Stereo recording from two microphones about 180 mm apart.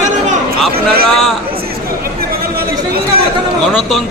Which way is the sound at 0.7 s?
60° right (ahead or behind).